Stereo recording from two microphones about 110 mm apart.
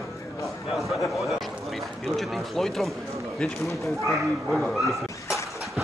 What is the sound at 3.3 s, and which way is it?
Speech, 5° left (ahead or behind).